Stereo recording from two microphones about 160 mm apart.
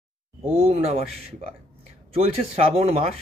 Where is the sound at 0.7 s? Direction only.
45° right (ahead or behind).